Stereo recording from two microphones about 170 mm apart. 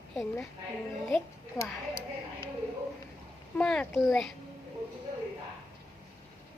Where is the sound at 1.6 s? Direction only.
20° left (ahead or behind).